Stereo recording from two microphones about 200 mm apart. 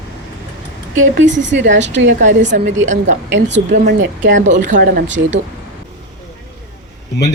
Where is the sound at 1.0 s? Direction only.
65° right (ahead or behind).